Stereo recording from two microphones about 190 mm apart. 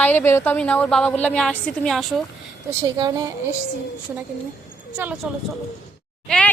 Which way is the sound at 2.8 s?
20° right (ahead or behind).